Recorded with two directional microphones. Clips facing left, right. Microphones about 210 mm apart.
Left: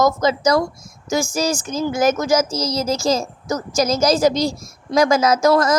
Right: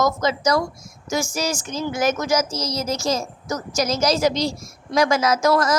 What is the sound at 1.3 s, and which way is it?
A child's voice, 45° left (ahead or behind).